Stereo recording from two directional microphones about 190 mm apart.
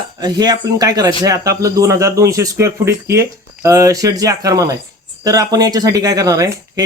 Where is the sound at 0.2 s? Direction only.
20° right (ahead or behind).